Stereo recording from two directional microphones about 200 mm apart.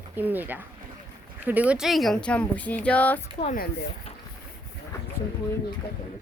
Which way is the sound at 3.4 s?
30° left (ahead or behind).